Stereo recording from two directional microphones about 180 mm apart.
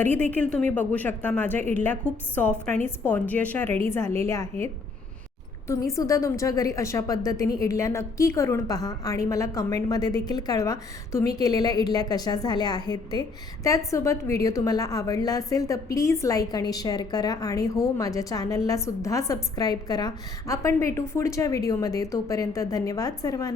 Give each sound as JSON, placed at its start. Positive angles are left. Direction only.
{"t": 0.0, "sound": "a woman's voice", "side_deg": 10}
{"t": 5.6, "sound": "a woman's voice", "side_deg": 15}